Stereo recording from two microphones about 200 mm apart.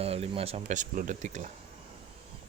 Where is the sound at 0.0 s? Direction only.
30° right (ahead or behind).